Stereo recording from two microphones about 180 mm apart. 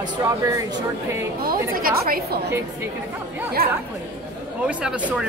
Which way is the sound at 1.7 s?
55° right (ahead or behind).